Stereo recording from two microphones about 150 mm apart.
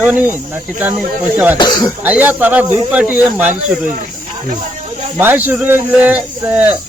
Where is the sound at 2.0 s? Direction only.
10° right (ahead or behind).